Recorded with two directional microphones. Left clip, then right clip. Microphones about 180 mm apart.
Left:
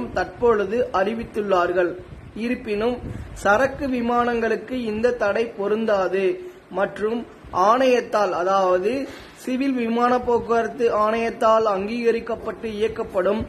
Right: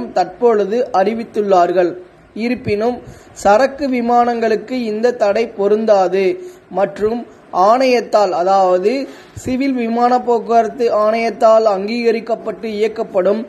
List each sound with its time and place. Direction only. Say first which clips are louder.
0.1 s a man's voice: right 7 dB; 10° right (ahead or behind)